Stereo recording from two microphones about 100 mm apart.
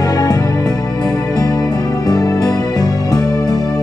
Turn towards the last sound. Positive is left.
turn(degrees=45)  # may be behind; listen again after turning